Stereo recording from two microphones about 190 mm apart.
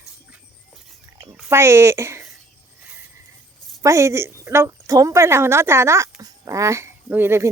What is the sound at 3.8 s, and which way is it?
A woman's voice, 15° right (ahead or behind).